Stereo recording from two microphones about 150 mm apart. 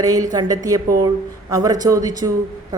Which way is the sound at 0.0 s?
25° right (ahead or behind).